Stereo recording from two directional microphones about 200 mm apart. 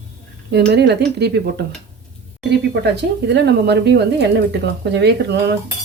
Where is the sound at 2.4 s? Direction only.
60° right (ahead or behind).